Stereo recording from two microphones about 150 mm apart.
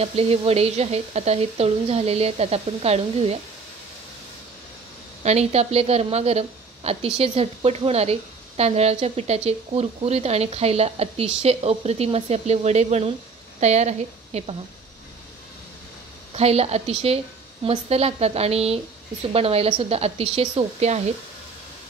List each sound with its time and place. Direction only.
0.0 s a woman's voice: 40° right (ahead or behind)
5.2 s a woman's voice: 45° right (ahead or behind)
16.3 s a woman's voice: 45° right (ahead or behind)